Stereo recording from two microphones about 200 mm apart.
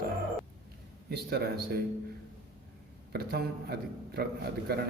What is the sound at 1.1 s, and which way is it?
Speech, 50° right (ahead or behind).